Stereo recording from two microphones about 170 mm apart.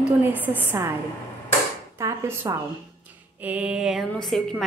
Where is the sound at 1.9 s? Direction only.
15° right (ahead or behind).